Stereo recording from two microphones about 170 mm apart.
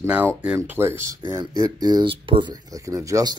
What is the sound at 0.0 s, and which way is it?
Speech, 10° right (ahead or behind).